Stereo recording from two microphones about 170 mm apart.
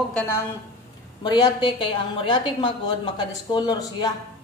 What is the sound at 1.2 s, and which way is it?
A woman's voice, 25° left (ahead or behind).